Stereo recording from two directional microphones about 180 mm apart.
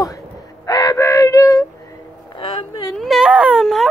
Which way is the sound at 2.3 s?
25° left (ahead or behind).